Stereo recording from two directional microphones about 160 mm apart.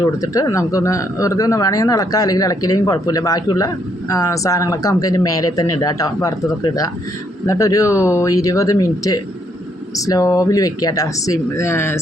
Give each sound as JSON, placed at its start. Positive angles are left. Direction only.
{"t": 0.2, "sound": "speech", "side_deg": 20}